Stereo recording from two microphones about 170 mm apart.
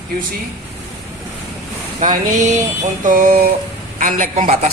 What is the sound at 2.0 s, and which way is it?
Speech, 45° right (ahead or behind).